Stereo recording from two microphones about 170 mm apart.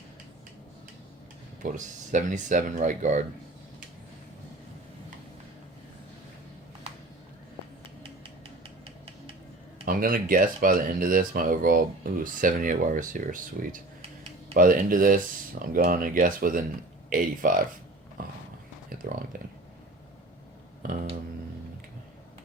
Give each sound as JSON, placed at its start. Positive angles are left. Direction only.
{"t": 1.6, "sound": "speech", "side_deg": -45}
{"t": 9.8, "sound": "speech", "side_deg": -55}
{"t": 18.2, "sound": "horse", "side_deg": -55}
{"t": 18.9, "sound": "a sound", "side_deg": -55}